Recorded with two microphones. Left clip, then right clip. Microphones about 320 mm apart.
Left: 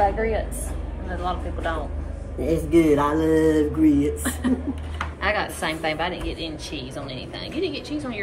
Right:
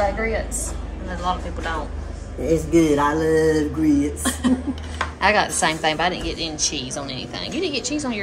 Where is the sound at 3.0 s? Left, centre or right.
Centre.